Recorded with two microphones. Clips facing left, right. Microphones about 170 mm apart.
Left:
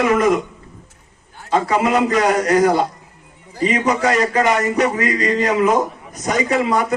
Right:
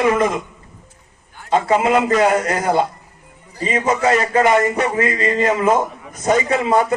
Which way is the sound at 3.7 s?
30° right (ahead or behind).